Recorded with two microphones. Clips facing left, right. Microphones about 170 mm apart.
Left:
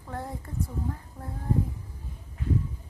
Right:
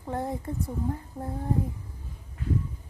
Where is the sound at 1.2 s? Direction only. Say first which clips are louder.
Right 6 dB; 35° right (ahead or behind).